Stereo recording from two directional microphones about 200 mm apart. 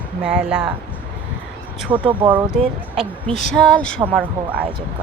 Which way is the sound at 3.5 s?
5° left (ahead or behind).